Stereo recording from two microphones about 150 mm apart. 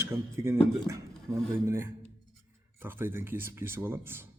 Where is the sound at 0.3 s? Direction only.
20° right (ahead or behind).